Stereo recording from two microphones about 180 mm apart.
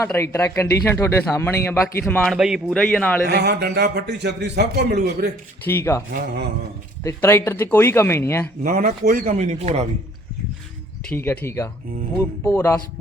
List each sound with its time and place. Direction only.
0.0 s a man's voice: 15° left (ahead or behind)
3.2 s a man's voice: 65° right (ahead or behind)
5.6 s a man's voice: 15° left (ahead or behind)
7.0 s a man's voice: 15° left (ahead or behind)
8.6 s speech: 50° right (ahead or behind)
11.1 s a man's voice: 10° left (ahead or behind)